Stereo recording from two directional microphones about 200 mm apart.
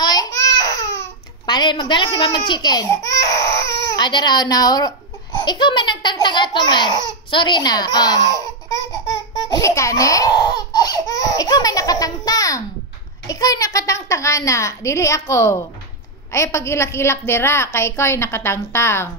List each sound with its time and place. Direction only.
0.0 s baby cry: 20° left (ahead or behind)
0.9 s a child's voice: 20° left (ahead or behind)
9.5 s laughter: 15° left (ahead or behind)
13.3 s a woman's voice: 15° left (ahead or behind)